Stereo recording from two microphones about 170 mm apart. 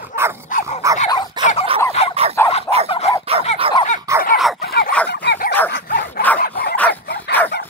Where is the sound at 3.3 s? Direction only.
35° right (ahead or behind).